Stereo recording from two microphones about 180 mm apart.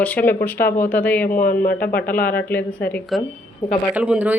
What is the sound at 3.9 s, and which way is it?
Speech, 5° right (ahead or behind).